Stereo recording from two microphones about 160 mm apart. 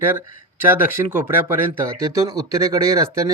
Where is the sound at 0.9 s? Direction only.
15° right (ahead or behind).